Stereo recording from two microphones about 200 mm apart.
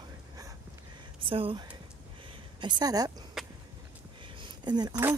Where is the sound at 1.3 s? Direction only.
25° right (ahead or behind).